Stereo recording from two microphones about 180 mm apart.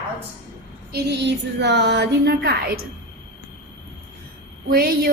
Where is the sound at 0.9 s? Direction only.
70° right (ahead or behind).